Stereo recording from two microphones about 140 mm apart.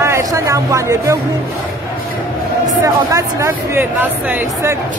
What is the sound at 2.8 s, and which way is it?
Speech, 20° right (ahead or behind).